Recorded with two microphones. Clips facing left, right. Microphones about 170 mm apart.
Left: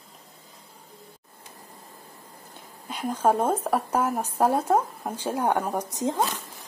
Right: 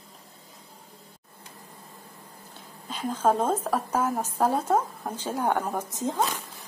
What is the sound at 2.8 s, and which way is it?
Speech, 10° left (ahead or behind).